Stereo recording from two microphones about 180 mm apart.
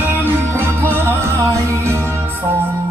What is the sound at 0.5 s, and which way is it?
Music, 15° right (ahead or behind).